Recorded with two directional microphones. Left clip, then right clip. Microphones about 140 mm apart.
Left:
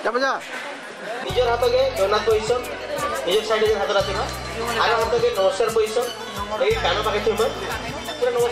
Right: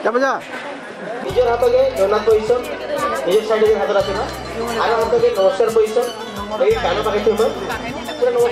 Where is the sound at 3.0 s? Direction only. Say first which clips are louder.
Right 5 dB; 20° right (ahead or behind).